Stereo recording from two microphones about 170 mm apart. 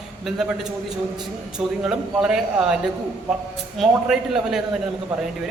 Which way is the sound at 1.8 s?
5° right (ahead or behind).